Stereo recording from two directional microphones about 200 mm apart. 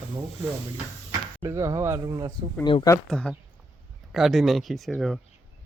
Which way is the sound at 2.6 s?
20° left (ahead or behind).